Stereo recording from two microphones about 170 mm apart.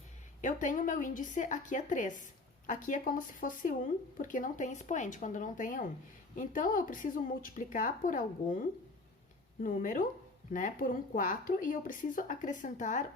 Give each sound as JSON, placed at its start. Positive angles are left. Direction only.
{"t": 0.4, "sound": "speech", "side_deg": 50}
{"t": 9.6, "sound": "speech", "side_deg": 50}